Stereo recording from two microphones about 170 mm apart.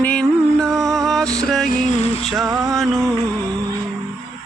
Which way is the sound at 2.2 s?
Centre (ahead or behind).